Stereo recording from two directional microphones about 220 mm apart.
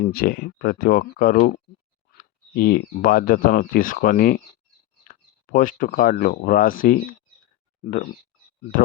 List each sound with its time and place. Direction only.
0.0 s speech: 45° left (ahead or behind)